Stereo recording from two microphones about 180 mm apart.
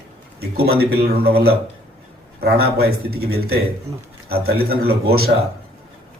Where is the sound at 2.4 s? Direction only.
60° right (ahead or behind).